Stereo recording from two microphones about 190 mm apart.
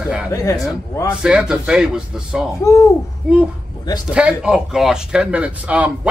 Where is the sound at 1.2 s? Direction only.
5° right (ahead or behind).